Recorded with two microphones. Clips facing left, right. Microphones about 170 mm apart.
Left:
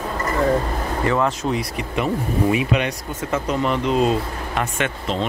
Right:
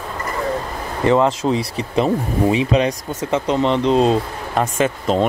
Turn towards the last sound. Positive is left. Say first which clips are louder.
# right 6 dB
turn(degrees=-45)  # may be behind; listen again after turning